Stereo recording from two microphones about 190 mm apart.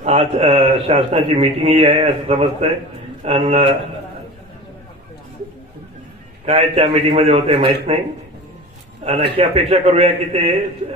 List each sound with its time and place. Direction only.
0.0 s a man's voice: 35° right (ahead or behind)
6.4 s a man's voice: 35° right (ahead or behind)
9.4 s a man's voice: 35° right (ahead or behind)